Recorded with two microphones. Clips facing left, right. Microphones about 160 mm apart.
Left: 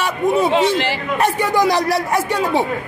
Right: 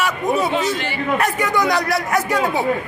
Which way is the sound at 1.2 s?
30° left (ahead or behind).